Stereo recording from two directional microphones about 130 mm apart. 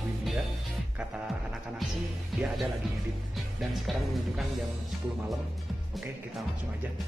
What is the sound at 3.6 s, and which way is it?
Speech, centre (ahead or behind).